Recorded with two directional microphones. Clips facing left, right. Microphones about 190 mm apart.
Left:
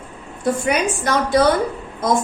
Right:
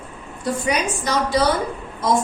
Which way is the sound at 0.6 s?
55° left (ahead or behind).